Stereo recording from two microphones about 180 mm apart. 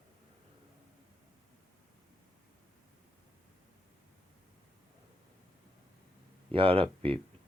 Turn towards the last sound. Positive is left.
turn(degrees=-30)  # may be behind; listen again after turning